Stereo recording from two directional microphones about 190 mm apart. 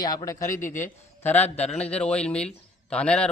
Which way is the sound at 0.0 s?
20° left (ahead or behind).